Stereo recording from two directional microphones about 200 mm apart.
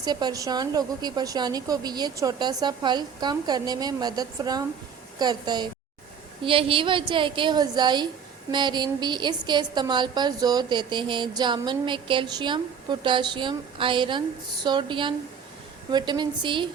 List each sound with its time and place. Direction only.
0.0 s a woman's voice: 20° right (ahead or behind)